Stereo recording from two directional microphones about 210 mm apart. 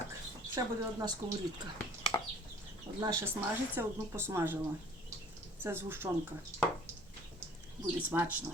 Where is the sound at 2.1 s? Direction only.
20° left (ahead or behind).